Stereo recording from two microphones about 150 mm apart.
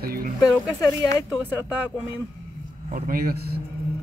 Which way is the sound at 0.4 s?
25° left (ahead or behind).